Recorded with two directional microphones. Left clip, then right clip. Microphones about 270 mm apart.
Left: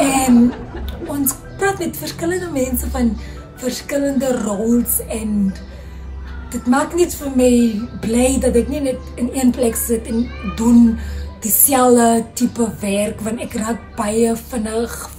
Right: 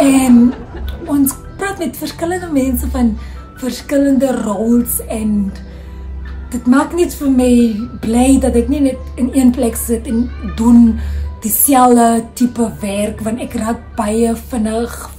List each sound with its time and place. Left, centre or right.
0.0 s music: centre
3.6 s speech: centre